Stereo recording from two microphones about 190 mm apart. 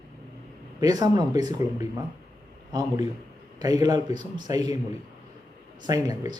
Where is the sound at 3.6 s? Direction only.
20° right (ahead or behind).